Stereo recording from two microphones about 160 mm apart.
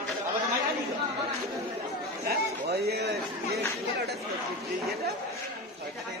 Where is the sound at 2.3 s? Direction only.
80° right.